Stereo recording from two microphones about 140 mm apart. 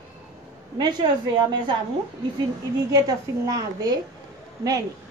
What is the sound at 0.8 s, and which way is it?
Speech, 30° right (ahead or behind).